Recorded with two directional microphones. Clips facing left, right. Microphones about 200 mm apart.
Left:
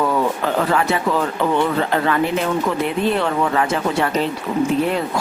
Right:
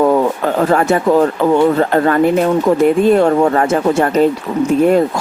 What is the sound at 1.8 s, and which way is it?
Speech, 45° right (ahead or behind).